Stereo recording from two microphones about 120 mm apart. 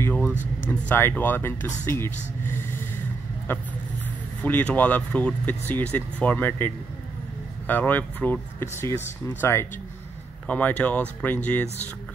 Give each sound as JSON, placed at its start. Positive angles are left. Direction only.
{"t": 0.0, "sound": "a sound", "side_deg": 15}
{"t": 0.7, "sound": "speech", "side_deg": 15}
{"t": 4.4, "sound": "speech", "side_deg": 15}